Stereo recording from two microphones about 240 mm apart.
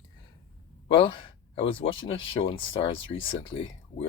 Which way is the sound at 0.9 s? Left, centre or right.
Left.